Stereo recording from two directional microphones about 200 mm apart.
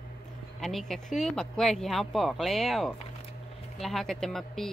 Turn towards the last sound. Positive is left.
turn(degrees=0)  # may be behind; listen again after turning